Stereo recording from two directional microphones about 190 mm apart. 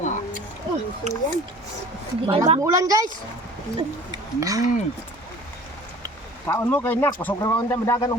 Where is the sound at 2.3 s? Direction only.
30° right (ahead or behind).